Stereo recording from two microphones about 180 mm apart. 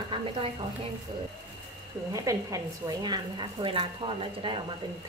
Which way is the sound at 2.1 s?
20° right (ahead or behind).